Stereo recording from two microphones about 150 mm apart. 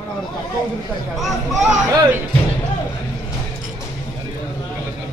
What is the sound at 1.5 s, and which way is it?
Speech, 20° right (ahead or behind).